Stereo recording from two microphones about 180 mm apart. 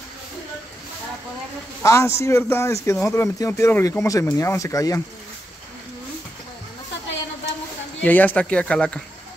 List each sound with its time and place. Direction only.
1.8 s a man's voice: 15° left (ahead or behind)
8.0 s a man's voice: 10° left (ahead or behind)